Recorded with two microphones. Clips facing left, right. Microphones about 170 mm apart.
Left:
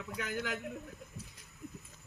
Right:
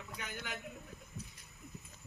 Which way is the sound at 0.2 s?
90° left.